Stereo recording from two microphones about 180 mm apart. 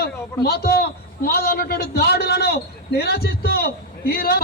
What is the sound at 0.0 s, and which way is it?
A man's voice, 60° left (ahead or behind).